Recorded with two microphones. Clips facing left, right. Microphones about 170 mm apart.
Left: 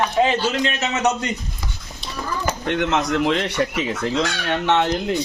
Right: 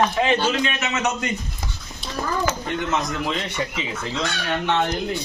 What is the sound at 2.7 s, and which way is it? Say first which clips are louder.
Speech: left 4 dB; 70° left (ahead or behind).